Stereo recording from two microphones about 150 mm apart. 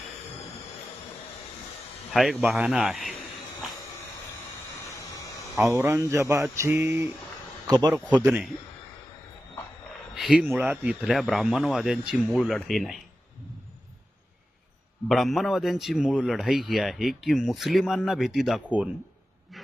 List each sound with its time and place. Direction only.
2.1 s a man's voice: 5° right (ahead or behind)
5.7 s speech: 15° right (ahead or behind)
7.7 s a man's voice: 25° right (ahead or behind)
8.2 s speech: 15° right (ahead or behind)
10.2 s a man's voice: 5° right (ahead or behind)
15.1 s a man's voice: centre (ahead or behind)